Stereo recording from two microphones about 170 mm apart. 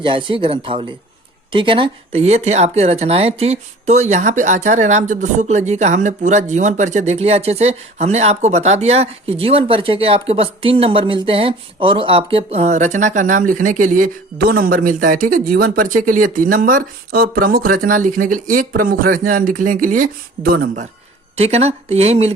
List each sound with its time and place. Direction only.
0.0 s speech: 30° right (ahead or behind); by 20.8 s 60° right (ahead or behind)
21.3 s speech: 40° right (ahead or behind)